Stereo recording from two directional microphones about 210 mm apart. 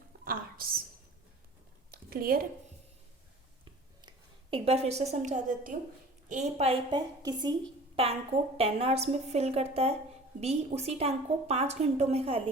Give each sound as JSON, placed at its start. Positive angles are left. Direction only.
{"t": 0.3, "sound": "a woman's voice", "side_deg": -45}
{"t": 1.9, "sound": "a sound", "side_deg": -45}
{"t": 4.5, "sound": "a woman's voice", "side_deg": -30}